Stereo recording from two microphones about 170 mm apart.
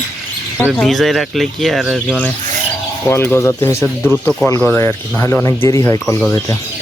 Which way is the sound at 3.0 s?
15° left (ahead or behind).